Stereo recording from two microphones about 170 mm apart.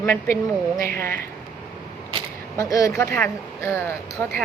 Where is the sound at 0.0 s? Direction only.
15° left (ahead or behind).